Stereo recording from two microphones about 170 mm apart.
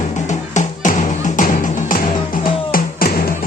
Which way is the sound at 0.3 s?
45° left (ahead or behind).